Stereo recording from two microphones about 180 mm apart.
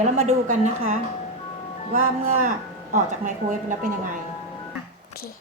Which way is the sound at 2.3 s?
45° right (ahead or behind).